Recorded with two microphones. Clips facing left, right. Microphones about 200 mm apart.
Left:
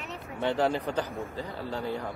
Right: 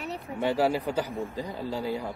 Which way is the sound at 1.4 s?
15° right (ahead or behind).